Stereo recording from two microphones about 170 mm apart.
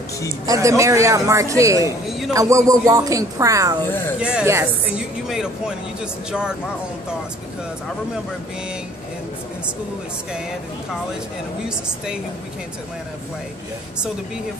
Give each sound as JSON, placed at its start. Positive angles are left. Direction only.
{"t": 0.5, "sound": "a man's voice", "side_deg": -20}
{"t": 2.0, "sound": "speech", "side_deg": 0}
{"t": 2.3, "sound": "a woman's voice", "side_deg": -20}
{"t": 4.2, "sound": "speech", "side_deg": -5}